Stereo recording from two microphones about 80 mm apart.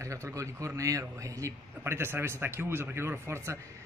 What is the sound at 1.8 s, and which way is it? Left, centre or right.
A man's voice, right.